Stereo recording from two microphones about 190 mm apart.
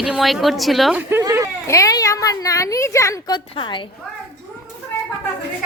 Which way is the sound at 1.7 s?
15° left (ahead or behind).